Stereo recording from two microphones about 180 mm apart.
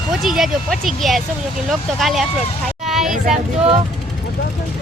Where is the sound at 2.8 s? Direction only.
Centre (ahead or behind).